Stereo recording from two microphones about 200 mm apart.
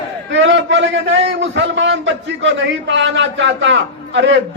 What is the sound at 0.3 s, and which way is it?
A man's voice, 65° right (ahead or behind).